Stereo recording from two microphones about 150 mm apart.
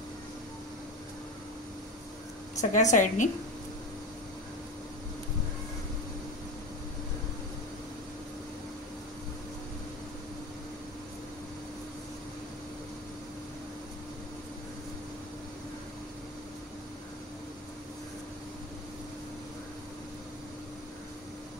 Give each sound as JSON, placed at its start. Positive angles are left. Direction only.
{"t": 2.6, "sound": "a woman's voice", "side_deg": 55}